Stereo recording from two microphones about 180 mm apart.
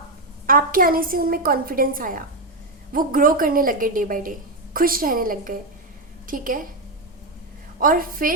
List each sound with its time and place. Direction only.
0.4 s a woman's voice: 50° right (ahead or behind)
7.8 s a woman's voice: 50° right (ahead or behind)